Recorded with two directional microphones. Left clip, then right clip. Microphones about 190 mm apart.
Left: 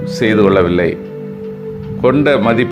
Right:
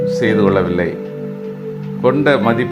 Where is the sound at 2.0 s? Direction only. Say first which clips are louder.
Left 2 dB; 15° left (ahead or behind).